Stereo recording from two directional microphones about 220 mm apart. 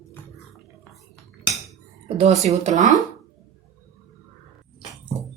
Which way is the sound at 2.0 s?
30° right (ahead or behind).